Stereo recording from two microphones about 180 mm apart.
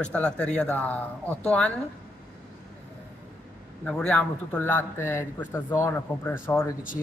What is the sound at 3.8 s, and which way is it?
A man's voice, 5° left (ahead or behind).